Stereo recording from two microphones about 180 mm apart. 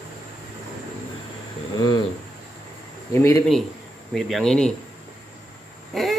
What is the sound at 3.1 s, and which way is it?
Speech, 15° left (ahead or behind).